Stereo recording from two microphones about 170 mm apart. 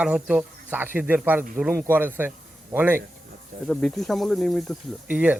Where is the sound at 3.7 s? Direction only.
Centre (ahead or behind).